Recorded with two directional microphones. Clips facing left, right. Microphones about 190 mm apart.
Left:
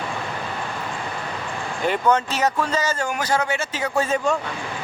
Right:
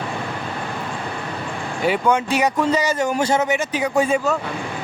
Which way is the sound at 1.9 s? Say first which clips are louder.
Right 2 dB; 10° right (ahead or behind).